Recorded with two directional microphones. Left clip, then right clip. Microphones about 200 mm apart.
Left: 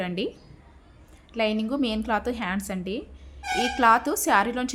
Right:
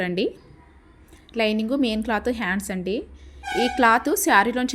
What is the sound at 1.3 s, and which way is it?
A woman's voice, 15° right (ahead or behind).